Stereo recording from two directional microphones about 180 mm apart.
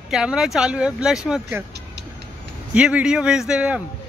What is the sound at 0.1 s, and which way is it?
Speech, 5° right (ahead or behind).